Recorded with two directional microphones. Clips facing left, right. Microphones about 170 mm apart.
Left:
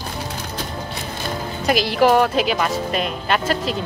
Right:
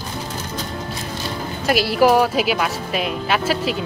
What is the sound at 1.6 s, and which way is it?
Speech, 5° right (ahead or behind).